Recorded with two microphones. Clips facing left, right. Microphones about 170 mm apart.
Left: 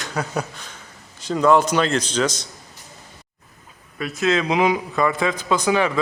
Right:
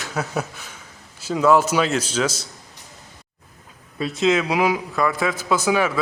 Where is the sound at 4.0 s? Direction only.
25° right (ahead or behind).